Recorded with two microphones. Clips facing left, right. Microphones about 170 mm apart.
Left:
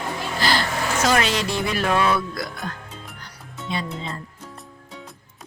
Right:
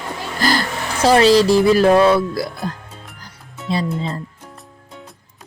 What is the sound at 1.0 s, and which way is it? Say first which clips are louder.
Speech: right 11 dB; 35° right (ahead or behind).